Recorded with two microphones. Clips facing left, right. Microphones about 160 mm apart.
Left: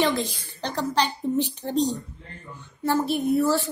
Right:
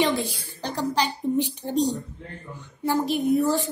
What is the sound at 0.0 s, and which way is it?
A woman's voice, 10° right (ahead or behind).